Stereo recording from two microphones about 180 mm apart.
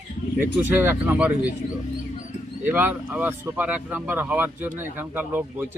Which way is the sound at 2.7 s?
10° right (ahead or behind).